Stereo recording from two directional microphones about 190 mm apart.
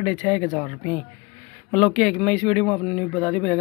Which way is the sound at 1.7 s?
5° left (ahead or behind).